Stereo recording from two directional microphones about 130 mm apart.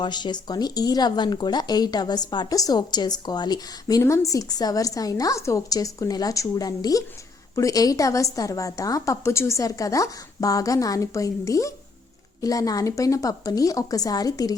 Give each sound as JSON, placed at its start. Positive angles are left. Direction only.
{"t": 0.0, "sound": "a woman's voice", "side_deg": 35}